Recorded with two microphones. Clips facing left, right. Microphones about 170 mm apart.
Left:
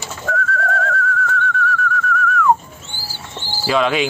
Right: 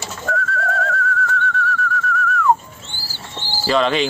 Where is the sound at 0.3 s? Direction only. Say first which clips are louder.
Left 1 dB; centre (ahead or behind).